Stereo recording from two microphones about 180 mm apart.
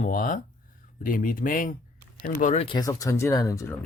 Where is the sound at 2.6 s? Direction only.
25° left (ahead or behind).